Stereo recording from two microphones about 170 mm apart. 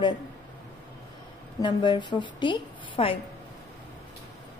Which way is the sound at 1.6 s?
25° left (ahead or behind).